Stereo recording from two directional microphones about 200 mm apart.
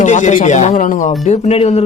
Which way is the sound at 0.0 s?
35° left (ahead or behind).